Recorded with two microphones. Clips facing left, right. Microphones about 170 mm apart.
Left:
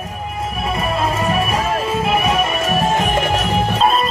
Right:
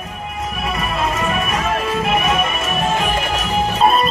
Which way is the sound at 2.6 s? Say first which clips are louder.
Left 2 dB; 45° left (ahead or behind).